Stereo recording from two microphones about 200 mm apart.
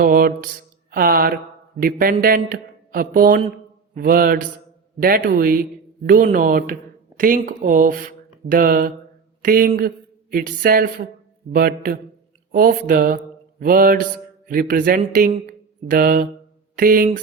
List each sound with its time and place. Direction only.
0.0 s mantra: 45° right (ahead or behind)
1.8 s speech: 45° right (ahead or behind)